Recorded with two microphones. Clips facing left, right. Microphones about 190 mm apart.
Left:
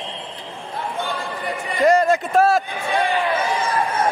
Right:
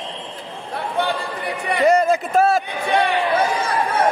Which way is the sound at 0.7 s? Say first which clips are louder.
Right 4 dB; 65° right (ahead or behind).